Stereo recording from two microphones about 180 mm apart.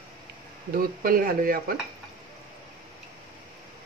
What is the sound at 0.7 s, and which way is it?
Speech, 50° right (ahead or behind).